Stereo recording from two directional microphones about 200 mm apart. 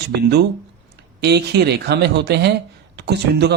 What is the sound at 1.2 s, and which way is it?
Speech, 55° right (ahead or behind).